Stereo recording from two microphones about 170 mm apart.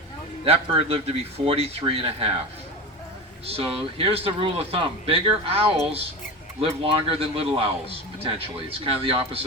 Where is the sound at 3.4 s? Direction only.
35° right (ahead or behind).